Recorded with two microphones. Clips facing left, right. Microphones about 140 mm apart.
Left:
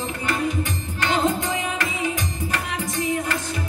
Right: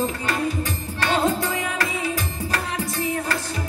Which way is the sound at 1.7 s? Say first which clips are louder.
Even; 35° right (ahead or behind).